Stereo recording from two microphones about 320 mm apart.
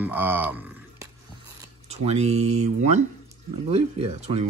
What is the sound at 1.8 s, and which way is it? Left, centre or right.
Speech, centre.